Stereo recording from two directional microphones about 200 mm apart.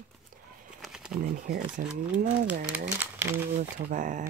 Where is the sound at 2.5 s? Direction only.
10° right (ahead or behind).